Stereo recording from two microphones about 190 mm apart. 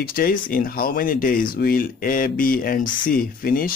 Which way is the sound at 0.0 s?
50° left (ahead or behind).